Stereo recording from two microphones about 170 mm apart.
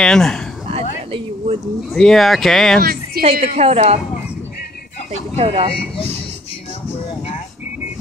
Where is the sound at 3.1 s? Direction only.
60° right (ahead or behind).